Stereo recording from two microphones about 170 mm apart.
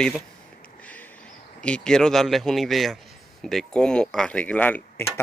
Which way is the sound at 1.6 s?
5° left (ahead or behind).